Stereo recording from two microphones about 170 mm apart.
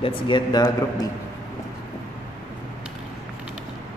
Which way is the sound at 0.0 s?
25° left (ahead or behind).